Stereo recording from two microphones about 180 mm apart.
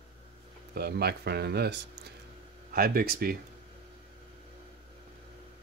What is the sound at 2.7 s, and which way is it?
Speech, 55° right (ahead or behind).